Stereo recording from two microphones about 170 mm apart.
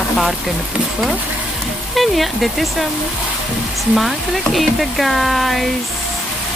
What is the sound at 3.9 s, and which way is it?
Speech, centre (ahead or behind).